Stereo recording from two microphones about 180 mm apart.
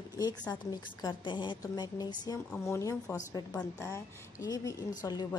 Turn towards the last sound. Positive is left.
turn(degrees=20)  # may be behind; listen again after turning